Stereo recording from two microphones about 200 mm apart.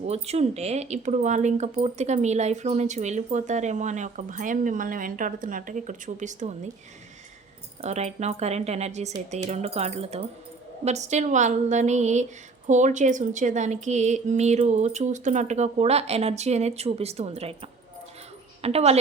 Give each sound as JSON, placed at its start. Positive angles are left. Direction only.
{"t": 0.0, "sound": "speech", "side_deg": -30}
{"t": 7.8, "sound": "speech", "side_deg": -35}